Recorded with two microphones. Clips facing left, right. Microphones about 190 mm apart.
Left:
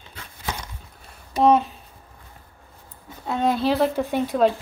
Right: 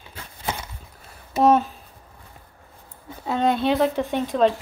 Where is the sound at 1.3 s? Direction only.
5° right (ahead or behind).